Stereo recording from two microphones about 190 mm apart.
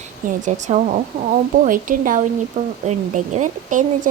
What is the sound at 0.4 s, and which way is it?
A woman's voice, 40° right (ahead or behind).